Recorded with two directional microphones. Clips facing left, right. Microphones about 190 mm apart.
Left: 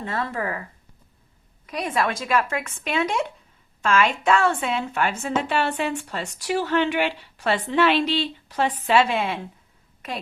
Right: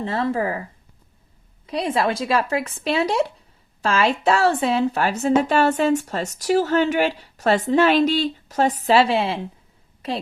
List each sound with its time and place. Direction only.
0.0 s speech: 30° right (ahead or behind)
1.6 s a woman's voice: 30° right (ahead or behind)